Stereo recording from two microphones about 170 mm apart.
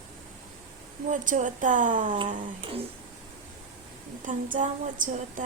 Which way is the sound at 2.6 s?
35° right (ahead or behind).